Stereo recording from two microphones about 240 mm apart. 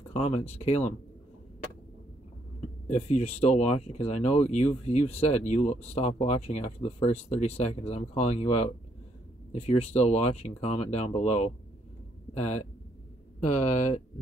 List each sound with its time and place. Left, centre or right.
0.1 s speech: left
2.9 s speech: left